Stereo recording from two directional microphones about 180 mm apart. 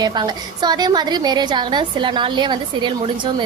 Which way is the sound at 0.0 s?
25° right (ahead or behind).